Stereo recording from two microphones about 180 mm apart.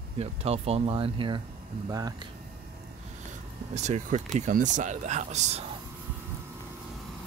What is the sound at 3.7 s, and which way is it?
Speech, 40° right (ahead or behind).